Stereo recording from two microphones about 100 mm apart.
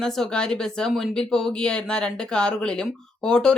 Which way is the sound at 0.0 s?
5° left (ahead or behind).